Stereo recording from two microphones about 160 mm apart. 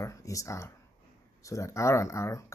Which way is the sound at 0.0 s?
20° left (ahead or behind).